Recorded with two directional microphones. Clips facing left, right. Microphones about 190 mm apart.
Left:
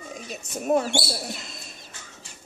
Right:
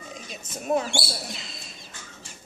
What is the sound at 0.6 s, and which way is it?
Speech, 45° left (ahead or behind).